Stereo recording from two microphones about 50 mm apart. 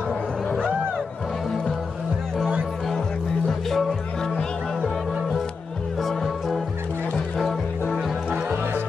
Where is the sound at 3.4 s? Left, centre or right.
Centre.